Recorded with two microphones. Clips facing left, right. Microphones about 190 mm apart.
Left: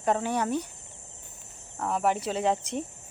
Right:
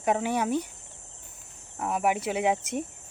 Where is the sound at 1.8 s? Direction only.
10° right (ahead or behind).